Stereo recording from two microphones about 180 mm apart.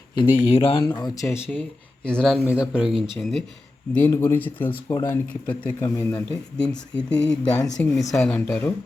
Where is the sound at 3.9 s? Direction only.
10° left (ahead or behind).